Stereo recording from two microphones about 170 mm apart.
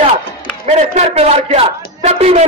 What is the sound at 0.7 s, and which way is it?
A man's voice, 40° right (ahead or behind).